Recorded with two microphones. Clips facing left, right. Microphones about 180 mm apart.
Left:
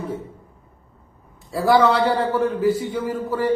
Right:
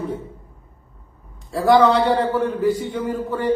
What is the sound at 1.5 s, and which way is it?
A man's voice, 5° left (ahead or behind).